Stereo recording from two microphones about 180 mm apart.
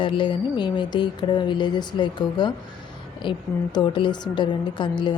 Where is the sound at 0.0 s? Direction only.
25° left (ahead or behind).